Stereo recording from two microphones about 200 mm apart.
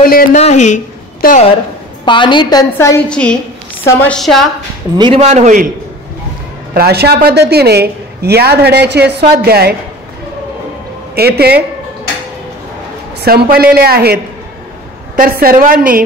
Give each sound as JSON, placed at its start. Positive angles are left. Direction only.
{"t": 0.0, "sound": "speech", "side_deg": 45}
{"t": 0.4, "sound": "speech", "side_deg": 35}
{"t": 1.2, "sound": "speech", "side_deg": 45}
{"t": 2.0, "sound": "a woman's voice", "side_deg": 25}
{"t": 3.1, "sound": "a woman's voice", "side_deg": 5}
{"t": 4.9, "sound": "speech", "side_deg": -25}
{"t": 6.7, "sound": "a woman's voice", "side_deg": -50}
{"t": 11.1, "sound": "a woman's voice", "side_deg": -50}
{"t": 13.2, "sound": "a woman's voice", "side_deg": -50}